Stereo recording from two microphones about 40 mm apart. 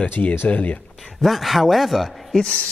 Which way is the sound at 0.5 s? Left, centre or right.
Left.